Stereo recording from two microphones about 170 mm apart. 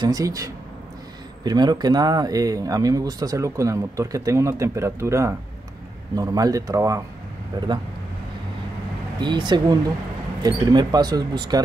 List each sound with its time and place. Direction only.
0.0 s speech: 20° right (ahead or behind)
9.2 s speech: 25° right (ahead or behind)